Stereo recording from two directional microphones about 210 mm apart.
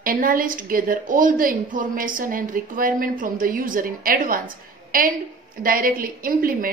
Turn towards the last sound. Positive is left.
turn(degrees=-45)  # may be behind; listen again after turning